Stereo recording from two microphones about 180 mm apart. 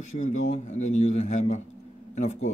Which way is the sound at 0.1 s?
40° left (ahead or behind).